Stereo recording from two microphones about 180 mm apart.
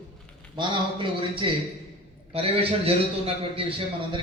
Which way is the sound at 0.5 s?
25° right (ahead or behind).